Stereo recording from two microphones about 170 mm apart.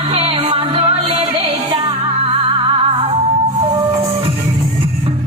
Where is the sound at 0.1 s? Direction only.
35° right (ahead or behind).